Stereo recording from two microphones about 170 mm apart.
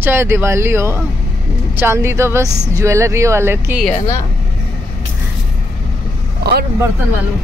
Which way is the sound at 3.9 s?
20° left (ahead or behind).